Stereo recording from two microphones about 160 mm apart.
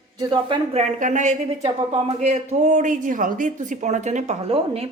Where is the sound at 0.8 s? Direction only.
50° right (ahead or behind).